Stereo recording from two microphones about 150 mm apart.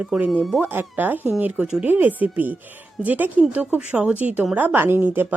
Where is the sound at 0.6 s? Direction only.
10° right (ahead or behind).